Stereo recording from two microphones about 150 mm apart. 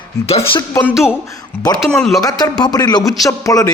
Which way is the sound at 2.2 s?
25° left (ahead or behind).